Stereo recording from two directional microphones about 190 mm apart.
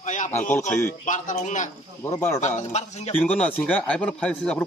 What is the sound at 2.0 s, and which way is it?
Speech, 15° left (ahead or behind).